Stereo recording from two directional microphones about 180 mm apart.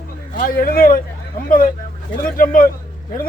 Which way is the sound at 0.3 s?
55° left (ahead or behind).